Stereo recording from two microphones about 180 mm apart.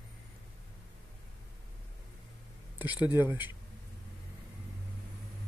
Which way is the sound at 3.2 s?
10° right (ahead or behind).